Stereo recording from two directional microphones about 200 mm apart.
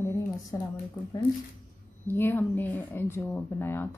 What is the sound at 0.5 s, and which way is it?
Speech, 20° left (ahead or behind).